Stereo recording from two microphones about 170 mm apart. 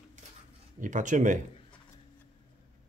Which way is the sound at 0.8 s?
50° right (ahead or behind).